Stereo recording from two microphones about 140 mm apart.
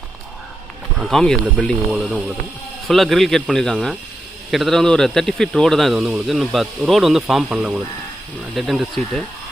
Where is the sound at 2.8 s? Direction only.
Centre (ahead or behind).